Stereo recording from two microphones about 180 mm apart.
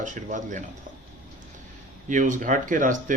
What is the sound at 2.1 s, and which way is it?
A man's voice, 45° right (ahead or behind).